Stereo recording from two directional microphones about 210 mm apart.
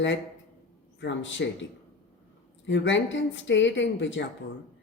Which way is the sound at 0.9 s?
60° left (ahead or behind).